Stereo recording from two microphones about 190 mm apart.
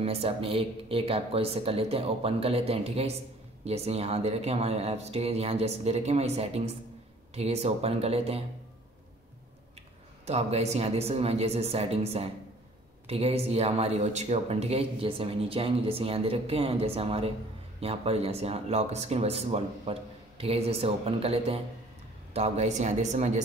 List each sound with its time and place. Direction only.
0.0 s speech: 30° right (ahead or behind)
10.2 s speech: 35° right (ahead or behind)